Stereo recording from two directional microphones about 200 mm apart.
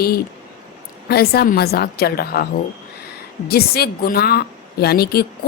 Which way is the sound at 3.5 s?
50° left (ahead or behind).